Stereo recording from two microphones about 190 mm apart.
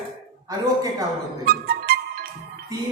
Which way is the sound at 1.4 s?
55° right (ahead or behind).